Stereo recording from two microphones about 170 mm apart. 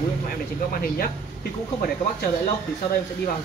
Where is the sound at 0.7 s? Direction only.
60° left (ahead or behind).